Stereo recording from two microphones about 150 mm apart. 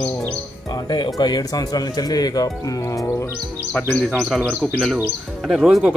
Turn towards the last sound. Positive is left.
turn(degrees=-5)  # may be behind; listen again after turning